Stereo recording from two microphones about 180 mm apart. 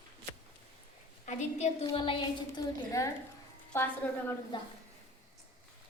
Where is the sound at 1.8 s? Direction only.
25° left (ahead or behind).